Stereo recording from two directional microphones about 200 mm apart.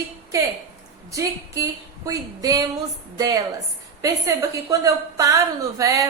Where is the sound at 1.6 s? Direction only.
15° right (ahead or behind).